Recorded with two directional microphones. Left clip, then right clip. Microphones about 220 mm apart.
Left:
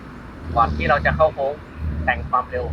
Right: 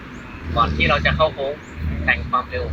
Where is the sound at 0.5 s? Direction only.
40° right (ahead or behind).